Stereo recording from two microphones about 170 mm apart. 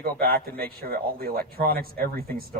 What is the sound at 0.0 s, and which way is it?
Speech, 60° right (ahead or behind).